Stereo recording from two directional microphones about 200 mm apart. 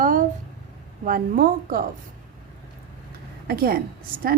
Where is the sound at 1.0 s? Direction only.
45° right (ahead or behind).